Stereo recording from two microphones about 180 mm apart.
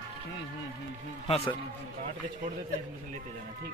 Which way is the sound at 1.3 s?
30° left (ahead or behind).